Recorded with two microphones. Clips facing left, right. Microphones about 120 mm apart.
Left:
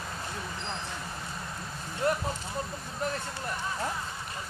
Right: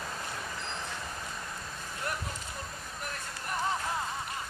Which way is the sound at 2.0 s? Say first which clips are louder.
Left 9 dB; 25° left (ahead or behind).